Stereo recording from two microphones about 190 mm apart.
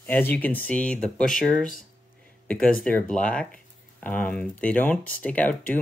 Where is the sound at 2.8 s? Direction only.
5° left (ahead or behind).